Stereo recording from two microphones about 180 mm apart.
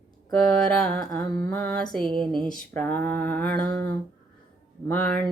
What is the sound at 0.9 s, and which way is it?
Music, 20° left (ahead or behind).